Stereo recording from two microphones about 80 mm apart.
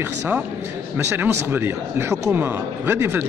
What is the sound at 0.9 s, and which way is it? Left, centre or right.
Speech, right.